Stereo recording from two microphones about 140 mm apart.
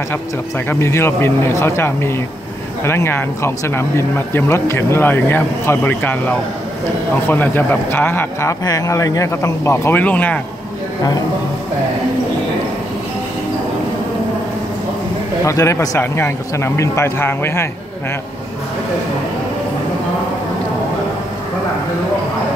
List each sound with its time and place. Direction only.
0.7 s speech: 20° left (ahead or behind)
15.4 s a man's voice: 20° left (ahead or behind)